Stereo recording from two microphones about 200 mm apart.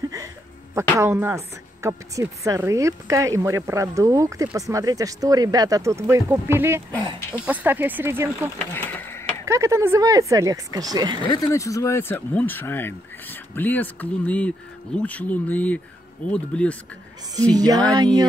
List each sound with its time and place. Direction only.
0.7 s a woman's voice: 15° right (ahead or behind)
8.5 s a sound: 10° left (ahead or behind)
9.5 s a woman's voice: 15° right (ahead or behind)
11.2 s speech: 15° left (ahead or behind)
17.4 s speech: 20° right (ahead or behind)